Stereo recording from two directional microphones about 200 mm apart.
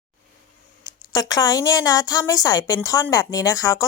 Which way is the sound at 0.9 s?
20° left (ahead or behind).